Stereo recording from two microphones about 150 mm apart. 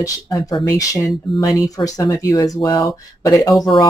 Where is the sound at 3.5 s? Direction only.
Centre (ahead or behind).